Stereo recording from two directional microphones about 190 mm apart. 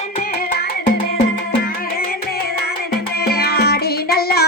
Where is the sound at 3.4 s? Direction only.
55° left (ahead or behind).